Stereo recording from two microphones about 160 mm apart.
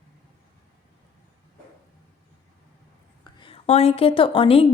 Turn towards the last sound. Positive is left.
turn(degrees=35)  # may be behind; listen again after turning